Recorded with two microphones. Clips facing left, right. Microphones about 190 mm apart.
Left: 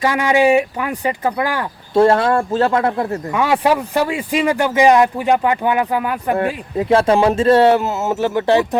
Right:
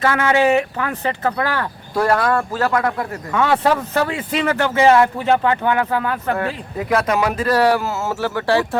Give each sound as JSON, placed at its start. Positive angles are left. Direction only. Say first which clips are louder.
{"t": 0.0, "sound": "speech", "louder": "left 2 dB", "side_deg": 15}
{"t": 1.9, "sound": "speech", "louder": "left 5 dB", "side_deg": 25}
{"t": 3.3, "sound": "speech", "louder": "even", "side_deg": 15}
{"t": 6.3, "sound": "speech", "louder": "left 4 dB", "side_deg": 25}